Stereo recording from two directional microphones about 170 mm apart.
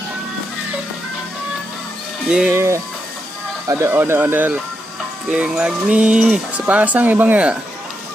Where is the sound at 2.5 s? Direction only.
15° right (ahead or behind).